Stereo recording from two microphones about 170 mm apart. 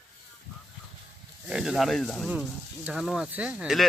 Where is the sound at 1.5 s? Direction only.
5° right (ahead or behind).